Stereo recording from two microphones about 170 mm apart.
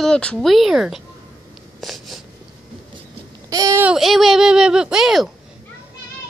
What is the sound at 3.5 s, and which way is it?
Speech, 20° right (ahead or behind).